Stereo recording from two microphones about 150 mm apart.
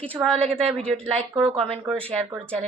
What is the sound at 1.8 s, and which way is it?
Speech, 10° left (ahead or behind).